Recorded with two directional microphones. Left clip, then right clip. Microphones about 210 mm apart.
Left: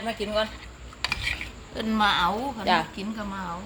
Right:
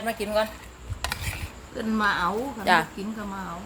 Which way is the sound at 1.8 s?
40° left (ahead or behind).